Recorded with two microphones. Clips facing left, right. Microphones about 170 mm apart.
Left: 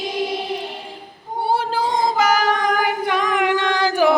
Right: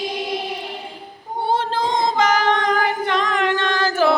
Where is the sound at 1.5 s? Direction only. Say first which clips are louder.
Even; 10° left (ahead or behind).